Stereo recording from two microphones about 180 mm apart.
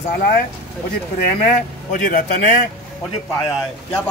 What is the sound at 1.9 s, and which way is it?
Speech, 50° left (ahead or behind).